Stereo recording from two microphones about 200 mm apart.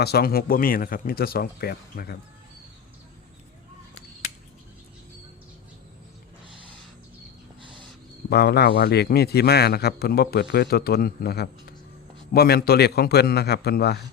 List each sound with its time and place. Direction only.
0.0 s speech: 50° left (ahead or behind)
8.3 s speech: 55° left (ahead or behind)